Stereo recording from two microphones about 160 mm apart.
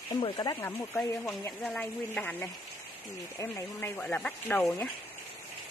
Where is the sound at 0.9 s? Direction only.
10° left (ahead or behind).